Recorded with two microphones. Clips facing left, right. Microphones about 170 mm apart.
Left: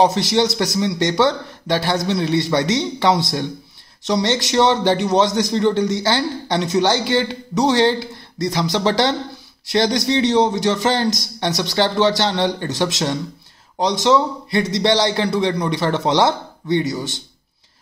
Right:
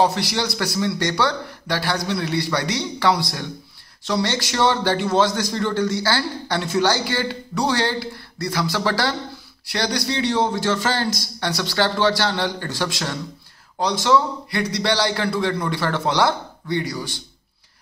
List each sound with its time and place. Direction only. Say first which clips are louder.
0.0 s a man's voice: left 4 dB; 25° left (ahead or behind)